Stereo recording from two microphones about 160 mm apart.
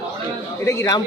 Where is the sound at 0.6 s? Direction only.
20° left (ahead or behind).